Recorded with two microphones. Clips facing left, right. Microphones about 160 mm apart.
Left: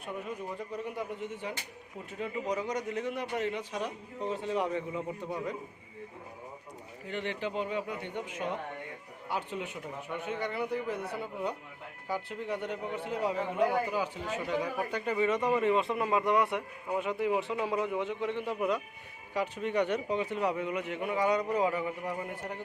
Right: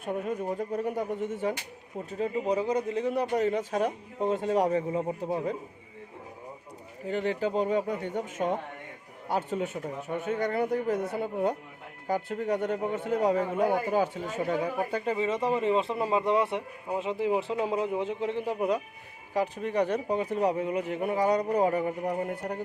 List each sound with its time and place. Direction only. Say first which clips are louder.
0.0 s speech: right 7 dB; 45° right (ahead or behind)
7.1 s speech: right 7 dB; 40° right (ahead or behind)
14.6 s speech: right 4 dB; 30° right (ahead or behind)